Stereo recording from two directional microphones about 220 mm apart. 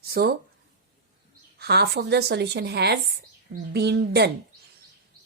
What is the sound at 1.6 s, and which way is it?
A woman's voice, 45° right (ahead or behind).